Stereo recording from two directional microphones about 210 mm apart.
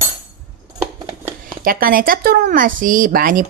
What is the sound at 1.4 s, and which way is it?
Speech, 45° right (ahead or behind).